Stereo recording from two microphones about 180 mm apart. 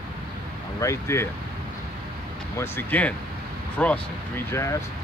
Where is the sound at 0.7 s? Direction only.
15° left (ahead or behind).